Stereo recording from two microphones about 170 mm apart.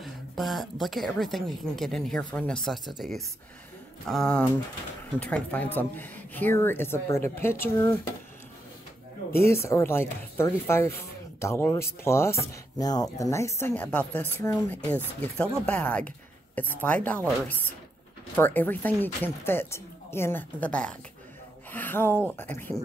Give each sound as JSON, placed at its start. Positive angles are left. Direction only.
{"t": 0.0, "sound": "a woman's voice", "side_deg": 0}
{"t": 9.3, "sound": "speech", "side_deg": 15}